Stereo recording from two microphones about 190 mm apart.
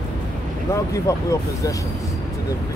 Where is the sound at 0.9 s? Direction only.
15° left (ahead or behind).